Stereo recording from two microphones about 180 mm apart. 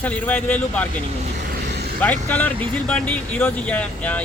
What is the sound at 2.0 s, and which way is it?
Speech, 10° left (ahead or behind).